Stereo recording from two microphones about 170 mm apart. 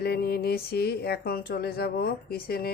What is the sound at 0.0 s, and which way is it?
Speech, 70° left (ahead or behind).